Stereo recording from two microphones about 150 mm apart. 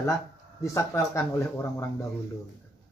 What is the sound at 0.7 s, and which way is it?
Speech, 20° left (ahead or behind).